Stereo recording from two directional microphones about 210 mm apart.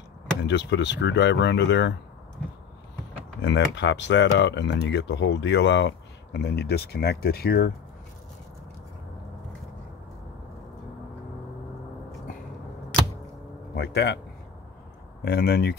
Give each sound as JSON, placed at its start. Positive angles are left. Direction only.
{"t": 0.4, "sound": "speech", "side_deg": 55}
{"t": 3.4, "sound": "speech", "side_deg": 55}
{"t": 13.7, "sound": "speech", "side_deg": 50}
{"t": 15.2, "sound": "speech", "side_deg": 50}